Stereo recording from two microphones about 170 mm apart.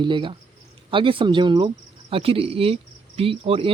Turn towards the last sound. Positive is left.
turn(degrees=-30)  # may be behind; listen again after turning